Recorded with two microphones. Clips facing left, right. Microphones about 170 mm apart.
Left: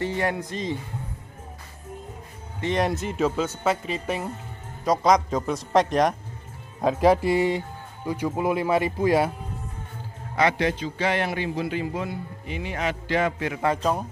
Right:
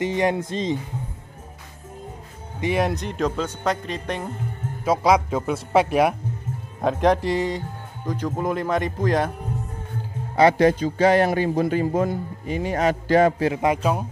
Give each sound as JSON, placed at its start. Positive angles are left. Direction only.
{"t": 0.0, "sound": "speech", "side_deg": -20}
{"t": 2.6, "sound": "speech", "side_deg": -5}
{"t": 4.8, "sound": "a man's voice", "side_deg": -5}
{"t": 6.8, "sound": "speech", "side_deg": 5}
{"t": 10.3, "sound": "a man's voice", "side_deg": -40}
{"t": 13.6, "sound": "a man's voice", "side_deg": -10}